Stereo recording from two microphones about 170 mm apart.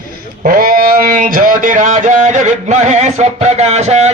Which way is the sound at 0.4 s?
55° right (ahead or behind).